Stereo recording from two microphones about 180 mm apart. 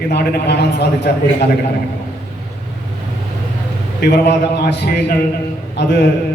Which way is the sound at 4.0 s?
65° left (ahead or behind).